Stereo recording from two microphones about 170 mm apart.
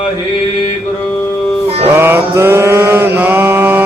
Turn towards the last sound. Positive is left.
turn(degrees=-10)  # may be behind; listen again after turning